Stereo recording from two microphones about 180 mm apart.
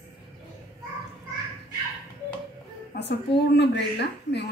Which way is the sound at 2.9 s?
65° left (ahead or behind).